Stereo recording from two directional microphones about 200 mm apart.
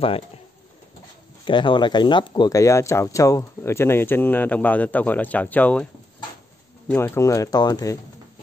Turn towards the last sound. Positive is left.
turn(degrees=20)  # may be behind; listen again after turning